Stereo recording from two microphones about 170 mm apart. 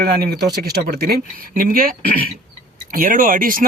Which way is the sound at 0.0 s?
65° right (ahead or behind).